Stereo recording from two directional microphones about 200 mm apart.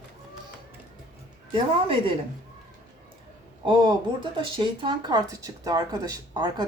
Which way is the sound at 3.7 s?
25° right (ahead or behind).